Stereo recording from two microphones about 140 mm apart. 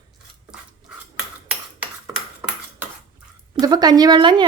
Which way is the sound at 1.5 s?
10° right (ahead or behind).